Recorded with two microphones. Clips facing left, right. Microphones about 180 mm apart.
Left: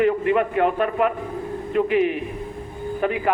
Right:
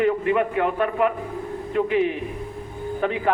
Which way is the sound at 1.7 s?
15° left (ahead or behind).